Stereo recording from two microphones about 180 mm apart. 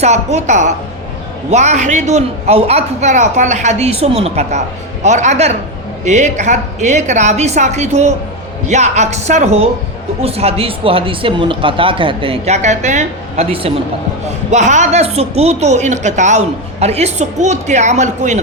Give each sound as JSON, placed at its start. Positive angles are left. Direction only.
{"t": 0.0, "sound": "a woman's voice", "side_deg": -40}